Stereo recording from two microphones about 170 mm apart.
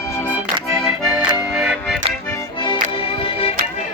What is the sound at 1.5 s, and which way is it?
Music, 5° right (ahead or behind).